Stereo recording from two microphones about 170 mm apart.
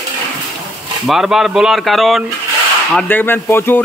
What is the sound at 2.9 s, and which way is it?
Speech, 10° left (ahead or behind).